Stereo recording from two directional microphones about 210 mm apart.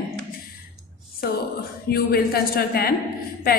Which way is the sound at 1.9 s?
45° left (ahead or behind).